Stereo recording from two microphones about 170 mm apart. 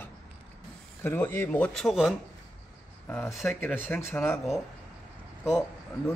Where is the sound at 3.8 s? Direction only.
10° left (ahead or behind).